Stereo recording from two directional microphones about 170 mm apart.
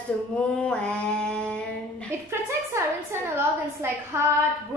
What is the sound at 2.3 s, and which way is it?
A woman's voice, 15° right (ahead or behind).